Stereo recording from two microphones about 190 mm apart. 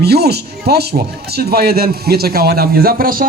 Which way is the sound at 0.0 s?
55° right (ahead or behind).